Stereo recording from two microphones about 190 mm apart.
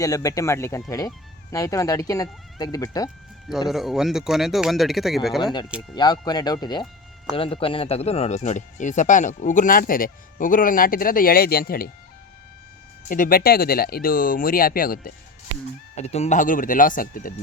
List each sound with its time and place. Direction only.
0.0 s speech: 15° left (ahead or behind)
3.7 s speech: centre (ahead or behind)
5.4 s speech: 25° left (ahead or behind); by 11.9 s 50° left (ahead or behind)
13.1 s speech: 45° left (ahead or behind)
16.0 s speech: 35° left (ahead or behind)